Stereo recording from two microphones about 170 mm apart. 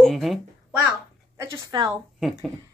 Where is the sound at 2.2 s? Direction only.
Centre (ahead or behind).